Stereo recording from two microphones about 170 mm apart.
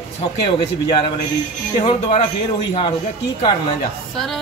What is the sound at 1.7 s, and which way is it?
Speech, 40° left (ahead or behind).